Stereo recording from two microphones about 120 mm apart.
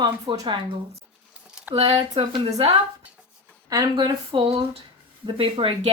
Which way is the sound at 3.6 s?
30° right (ahead or behind).